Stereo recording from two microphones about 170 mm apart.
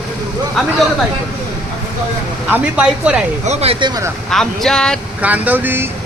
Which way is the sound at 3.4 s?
40° right (ahead or behind).